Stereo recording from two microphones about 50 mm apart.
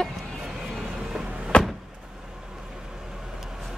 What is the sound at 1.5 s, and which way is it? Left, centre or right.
Vehicle, left.